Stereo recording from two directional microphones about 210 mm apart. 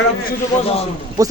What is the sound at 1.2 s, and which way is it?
Speech, 15° right (ahead or behind).